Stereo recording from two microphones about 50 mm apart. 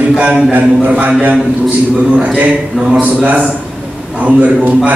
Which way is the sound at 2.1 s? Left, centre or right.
Right.